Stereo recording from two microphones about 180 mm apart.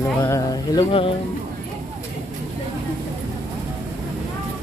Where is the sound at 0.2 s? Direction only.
25° left (ahead or behind).